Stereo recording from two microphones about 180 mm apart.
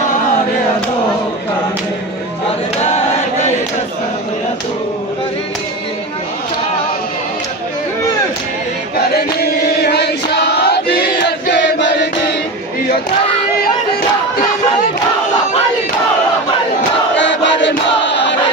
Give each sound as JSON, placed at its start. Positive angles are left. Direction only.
{"t": 2.8, "sound": "chant", "side_deg": 35}
{"t": 9.1, "sound": "chant", "side_deg": 60}
{"t": 17.2, "sound": "chant", "side_deg": 90}